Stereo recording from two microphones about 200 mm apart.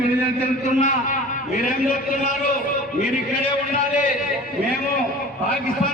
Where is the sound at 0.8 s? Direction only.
40° left (ahead or behind).